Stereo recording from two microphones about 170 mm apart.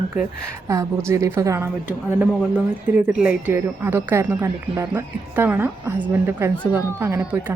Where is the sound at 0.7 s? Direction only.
15° right (ahead or behind).